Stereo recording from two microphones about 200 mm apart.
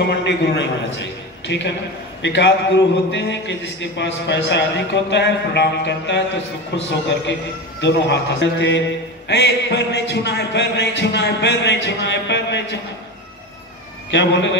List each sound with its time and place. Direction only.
0.2 s a man's voice: 60° left (ahead or behind)
14.1 s a man's voice: 60° left (ahead or behind)